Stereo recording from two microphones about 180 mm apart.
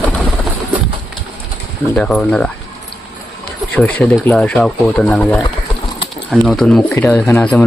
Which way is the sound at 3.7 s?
10° left (ahead or behind).